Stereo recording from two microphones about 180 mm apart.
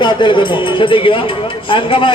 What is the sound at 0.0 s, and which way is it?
A man's voice, 25° left (ahead or behind).